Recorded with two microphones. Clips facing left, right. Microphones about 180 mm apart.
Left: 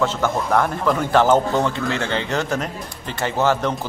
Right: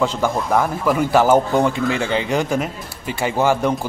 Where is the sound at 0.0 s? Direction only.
15° right (ahead or behind).